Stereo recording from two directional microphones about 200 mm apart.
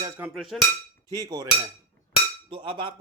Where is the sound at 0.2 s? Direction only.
10° right (ahead or behind).